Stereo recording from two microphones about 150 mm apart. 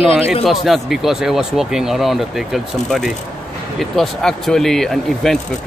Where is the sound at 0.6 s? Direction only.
Centre (ahead or behind).